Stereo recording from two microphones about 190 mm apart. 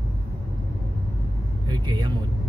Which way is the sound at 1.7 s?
25° right (ahead or behind).